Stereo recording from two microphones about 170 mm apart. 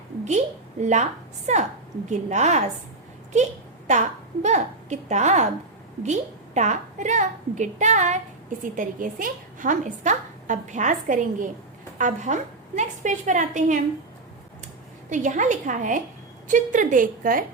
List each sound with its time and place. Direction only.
0.3 s a woman's voice: 45° right (ahead or behind)
3.8 s a woman's voice: 45° right (ahead or behind)
15.1 s speech: 45° right (ahead or behind)